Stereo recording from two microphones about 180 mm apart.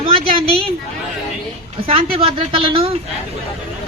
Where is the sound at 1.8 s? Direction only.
30° right (ahead or behind).